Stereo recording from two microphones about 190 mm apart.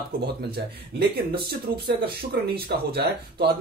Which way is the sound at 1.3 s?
55° right (ahead or behind).